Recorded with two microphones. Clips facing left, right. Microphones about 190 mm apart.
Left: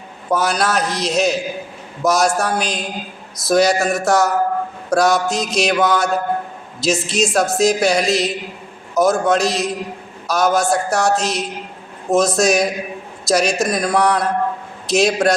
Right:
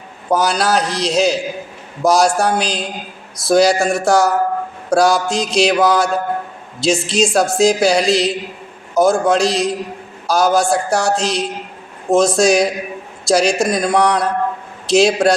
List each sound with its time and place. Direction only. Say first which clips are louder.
0.3 s a woman's voice: right 2 dB; 30° right (ahead or behind)